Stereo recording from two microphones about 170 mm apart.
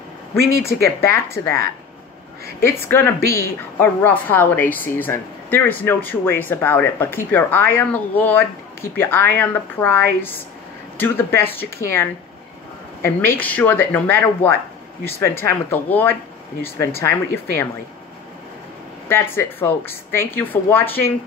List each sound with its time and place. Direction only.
0.8 s speech: 15° left (ahead or behind)
2.6 s speech: 15° left (ahead or behind)
19.0 s speech: 15° left (ahead or behind)